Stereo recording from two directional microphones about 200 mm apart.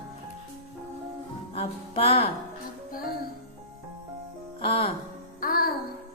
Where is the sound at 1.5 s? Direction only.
25° left (ahead or behind).